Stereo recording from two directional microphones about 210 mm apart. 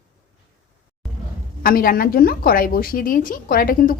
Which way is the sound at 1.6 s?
45° left (ahead or behind).